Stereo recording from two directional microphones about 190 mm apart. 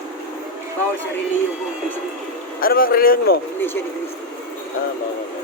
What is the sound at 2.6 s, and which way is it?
Speech, 50° left (ahead or behind).